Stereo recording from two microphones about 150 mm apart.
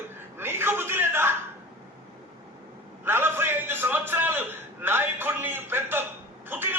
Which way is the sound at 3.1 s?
15° right (ahead or behind).